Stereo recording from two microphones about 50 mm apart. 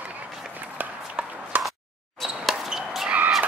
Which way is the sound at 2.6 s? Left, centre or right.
Centre.